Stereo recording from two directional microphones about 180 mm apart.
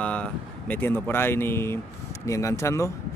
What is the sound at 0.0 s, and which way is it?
Speech, 5° left (ahead or behind).